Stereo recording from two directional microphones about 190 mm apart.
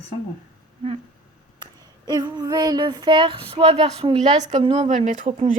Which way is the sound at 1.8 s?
20° right (ahead or behind).